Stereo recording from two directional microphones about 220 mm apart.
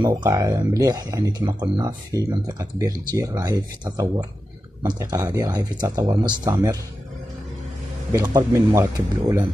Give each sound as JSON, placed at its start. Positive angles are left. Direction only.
{"t": 0.0, "sound": "speech", "side_deg": -15}
{"t": 8.1, "sound": "speech", "side_deg": -15}